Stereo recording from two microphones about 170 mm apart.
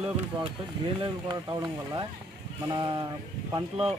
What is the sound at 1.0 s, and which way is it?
Speech, 25° right (ahead or behind).